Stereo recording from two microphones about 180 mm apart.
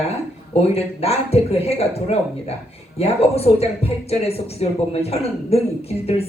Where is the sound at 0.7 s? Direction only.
35° left (ahead or behind).